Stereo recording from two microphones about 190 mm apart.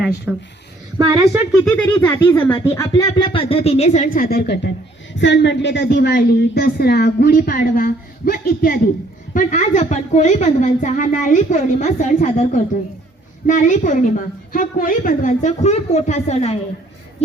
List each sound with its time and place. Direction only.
0.3 s speech: 10° right (ahead or behind)
0.9 s a woman's voice: 20° right (ahead or behind)
1.6 s speech: 10° left (ahead or behind)
2.5 s speech: 30° left (ahead or behind)
2.7 s a woman's voice: 20° left (ahead or behind); by 16.6 s 35° left (ahead or behind)